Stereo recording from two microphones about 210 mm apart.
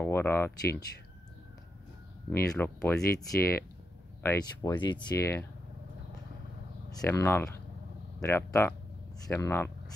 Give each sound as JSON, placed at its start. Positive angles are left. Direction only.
{"t": 0.0, "sound": "speech", "side_deg": 10}
{"t": 2.2, "sound": "speech", "side_deg": 10}
{"t": 6.9, "sound": "speech", "side_deg": 15}